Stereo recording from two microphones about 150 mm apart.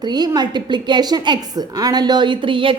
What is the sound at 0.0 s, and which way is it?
A woman's voice, 30° right (ahead or behind).